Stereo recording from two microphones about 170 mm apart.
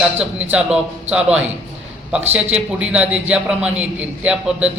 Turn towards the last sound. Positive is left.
turn(degrees=-5)  # may be behind; listen again after turning